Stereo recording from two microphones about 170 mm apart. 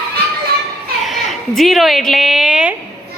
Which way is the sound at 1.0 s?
Centre (ahead or behind).